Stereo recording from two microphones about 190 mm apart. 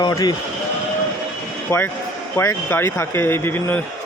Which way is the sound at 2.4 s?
10° left (ahead or behind).